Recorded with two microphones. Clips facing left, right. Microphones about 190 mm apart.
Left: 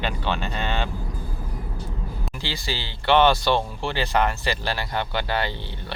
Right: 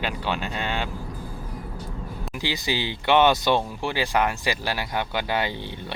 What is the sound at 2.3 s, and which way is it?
Speech, 15° right (ahead or behind).